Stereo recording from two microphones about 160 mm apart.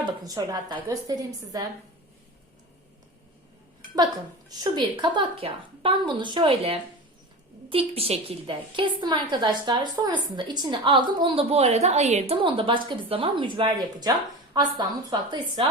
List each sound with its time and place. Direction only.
0.0 s a woman's voice: 20° right (ahead or behind)
3.9 s a woman's voice: 25° right (ahead or behind)